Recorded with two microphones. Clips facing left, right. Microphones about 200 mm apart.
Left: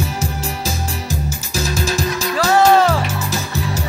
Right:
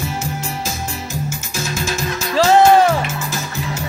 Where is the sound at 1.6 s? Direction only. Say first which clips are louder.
Left 3 dB; 35° left (ahead or behind).